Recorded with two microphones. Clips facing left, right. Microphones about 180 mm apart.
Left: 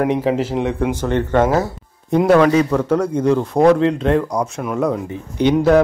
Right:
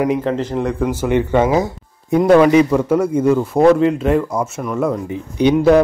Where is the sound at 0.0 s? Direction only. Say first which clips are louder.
Even; 5° left (ahead or behind).